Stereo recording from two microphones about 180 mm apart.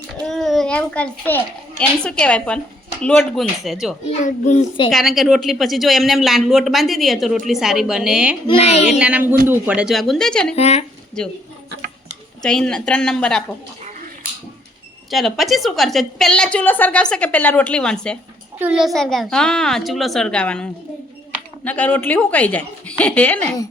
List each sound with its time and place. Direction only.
0.2 s a sound: centre (ahead or behind)
1.8 s speech: 5° left (ahead or behind)
4.2 s a child's voice: 40° left (ahead or behind)
4.9 s speech: centre (ahead or behind)
8.4 s a woman's voice: 35° left (ahead or behind)
9.0 s speech: 10° right (ahead or behind)
10.5 s a woman's voice: 35° left (ahead or behind)
12.4 s speech: 5° left (ahead or behind)
15.1 s a woman's voice: centre (ahead or behind)